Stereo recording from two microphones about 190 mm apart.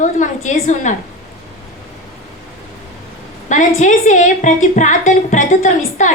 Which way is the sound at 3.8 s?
40° left (ahead or behind).